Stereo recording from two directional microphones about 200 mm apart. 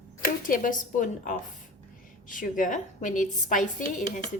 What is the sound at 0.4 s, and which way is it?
A woman's voice, 45° left (ahead or behind).